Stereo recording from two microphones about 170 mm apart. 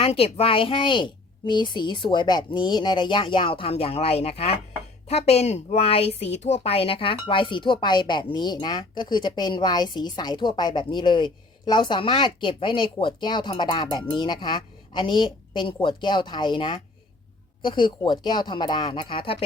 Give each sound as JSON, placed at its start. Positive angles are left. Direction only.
{"t": 0.0, "sound": "speech", "side_deg": 35}